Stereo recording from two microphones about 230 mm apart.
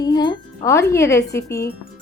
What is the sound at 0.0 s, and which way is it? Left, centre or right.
Speech, centre.